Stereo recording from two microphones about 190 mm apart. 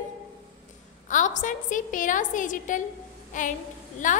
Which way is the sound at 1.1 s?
40° left (ahead or behind).